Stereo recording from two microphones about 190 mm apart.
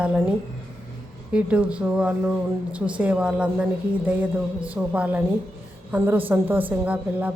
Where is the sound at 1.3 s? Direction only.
5° right (ahead or behind).